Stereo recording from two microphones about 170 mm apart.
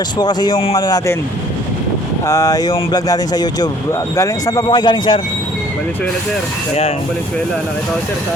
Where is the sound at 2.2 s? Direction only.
20° left (ahead or behind).